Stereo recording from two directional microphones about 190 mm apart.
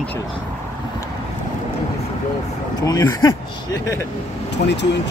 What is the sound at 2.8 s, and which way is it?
Speech, 20° left (ahead or behind).